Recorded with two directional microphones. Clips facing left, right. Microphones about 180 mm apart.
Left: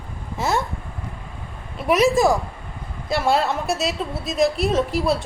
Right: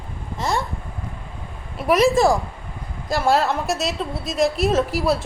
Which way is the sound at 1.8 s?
Centre (ahead or behind).